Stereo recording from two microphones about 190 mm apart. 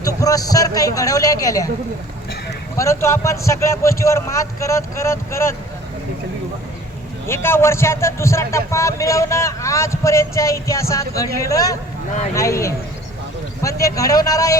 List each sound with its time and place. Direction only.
0.2 s a man's voice: 20° left (ahead or behind)
2.7 s a man's voice: 15° left (ahead or behind)
7.3 s a man's voice: 15° left (ahead or behind)